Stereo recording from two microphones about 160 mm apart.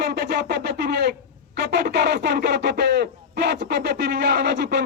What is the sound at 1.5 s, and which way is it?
Speech, 90° right.